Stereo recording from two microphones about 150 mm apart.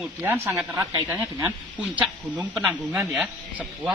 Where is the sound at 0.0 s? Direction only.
10° right (ahead or behind).